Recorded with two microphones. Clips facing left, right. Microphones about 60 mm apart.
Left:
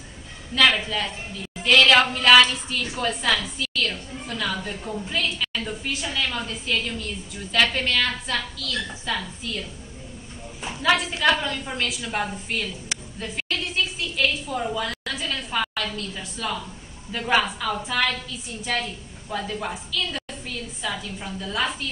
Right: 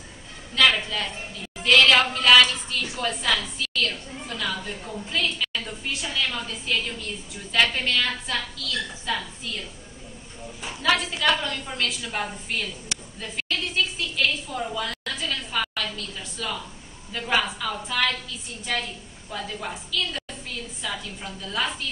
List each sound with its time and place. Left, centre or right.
0.6 s a woman's voice: centre
1.6 s a sound: centre
2.0 s a woman's voice: centre
10.6 s a woman's voice: centre
11.6 s a woman's voice: centre
11.9 s a woman's voice: centre
13.2 s a sound: centre
17.1 s a woman's voice: centre
19.3 s a woman's voice: centre